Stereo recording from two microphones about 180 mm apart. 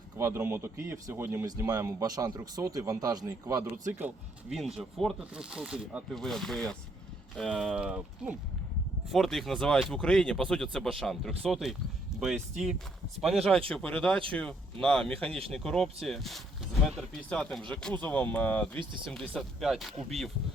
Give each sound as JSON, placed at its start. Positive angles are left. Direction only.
{"t": 0.2, "sound": "speech", "side_deg": -15}
{"t": 3.9, "sound": "speech", "side_deg": -5}